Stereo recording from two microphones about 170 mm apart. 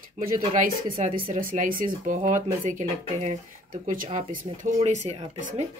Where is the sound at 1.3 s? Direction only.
45° right (ahead or behind).